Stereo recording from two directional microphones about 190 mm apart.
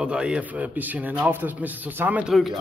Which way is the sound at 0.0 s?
5° right (ahead or behind).